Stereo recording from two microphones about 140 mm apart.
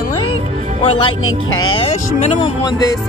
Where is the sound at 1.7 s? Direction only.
45° left (ahead or behind).